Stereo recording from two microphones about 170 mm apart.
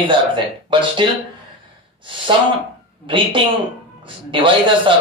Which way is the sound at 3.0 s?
30° right (ahead or behind).